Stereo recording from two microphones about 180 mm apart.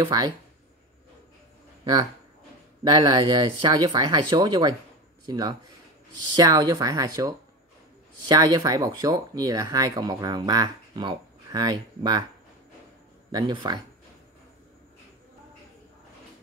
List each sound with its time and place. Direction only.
0.0 s speech: 25° right (ahead or behind)
2.8 s speech: 20° right (ahead or behind)
13.3 s speech: 25° right (ahead or behind)